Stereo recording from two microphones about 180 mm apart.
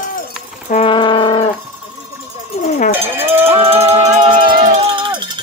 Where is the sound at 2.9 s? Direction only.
10° right (ahead or behind).